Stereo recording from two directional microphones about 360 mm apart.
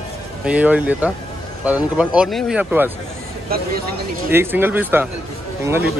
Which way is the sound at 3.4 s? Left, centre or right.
Right.